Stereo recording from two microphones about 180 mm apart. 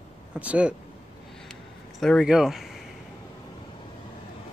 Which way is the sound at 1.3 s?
5° left (ahead or behind).